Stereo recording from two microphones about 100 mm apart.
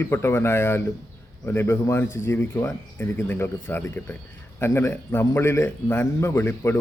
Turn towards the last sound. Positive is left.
turn(degrees=25)  # may be behind; listen again after turning